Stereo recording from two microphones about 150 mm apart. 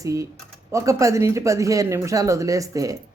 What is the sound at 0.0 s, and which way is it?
Speech, 20° right (ahead or behind).